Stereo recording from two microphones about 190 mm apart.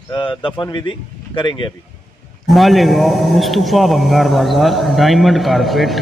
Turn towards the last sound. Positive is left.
turn(degrees=0)  # may be behind; listen again after turning